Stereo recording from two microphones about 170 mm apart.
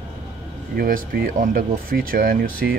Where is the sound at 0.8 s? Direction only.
60° right (ahead or behind).